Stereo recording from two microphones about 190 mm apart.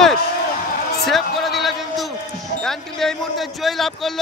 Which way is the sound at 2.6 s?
Centre (ahead or behind).